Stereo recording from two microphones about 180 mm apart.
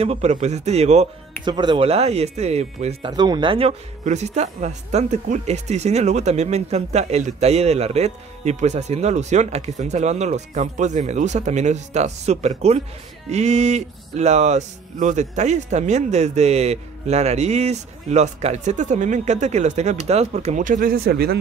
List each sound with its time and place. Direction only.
0.0 s speech: 35° right (ahead or behind)
1.4 s speech: 25° right (ahead or behind)
3.1 s speech: 25° right (ahead or behind); by 21.4 s 60° right (ahead or behind)